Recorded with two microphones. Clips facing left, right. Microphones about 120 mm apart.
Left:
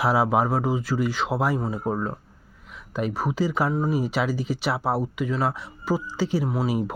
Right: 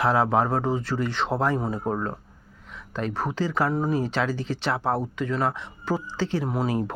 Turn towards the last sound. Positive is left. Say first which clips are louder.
# left 1 dB
turn(degrees=5)  # may be behind; listen again after turning